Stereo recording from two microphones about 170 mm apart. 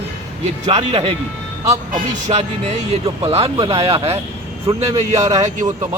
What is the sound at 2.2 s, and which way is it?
Speech, 40° right (ahead or behind).